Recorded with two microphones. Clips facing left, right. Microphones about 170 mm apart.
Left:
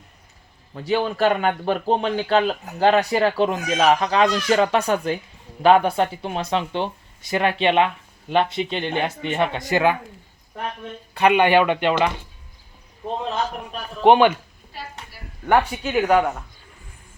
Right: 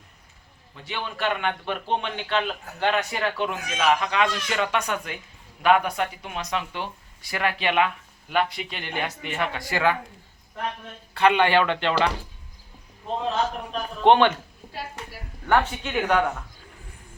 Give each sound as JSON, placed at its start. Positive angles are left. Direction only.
{"t": 0.7, "sound": "speech", "side_deg": 40}
{"t": 11.1, "sound": "speech", "side_deg": 15}
{"t": 14.0, "sound": "speech", "side_deg": 10}
{"t": 15.4, "sound": "speech", "side_deg": 10}